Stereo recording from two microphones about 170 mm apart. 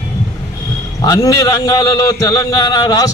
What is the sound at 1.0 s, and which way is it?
A man's voice, 20° left (ahead or behind).